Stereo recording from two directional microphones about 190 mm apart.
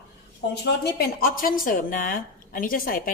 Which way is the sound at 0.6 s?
55° left (ahead or behind).